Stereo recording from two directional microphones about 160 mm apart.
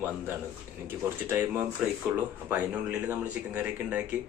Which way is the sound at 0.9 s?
15° right (ahead or behind).